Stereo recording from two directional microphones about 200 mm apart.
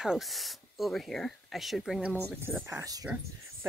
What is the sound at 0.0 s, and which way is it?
Speech, centre (ahead or behind).